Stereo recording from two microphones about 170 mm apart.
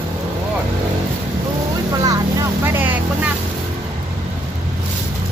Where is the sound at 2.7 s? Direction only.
10° right (ahead or behind).